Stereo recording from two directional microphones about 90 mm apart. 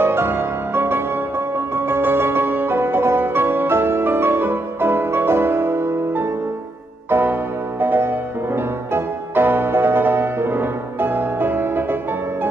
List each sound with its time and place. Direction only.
0.0 s music: 25° right (ahead or behind)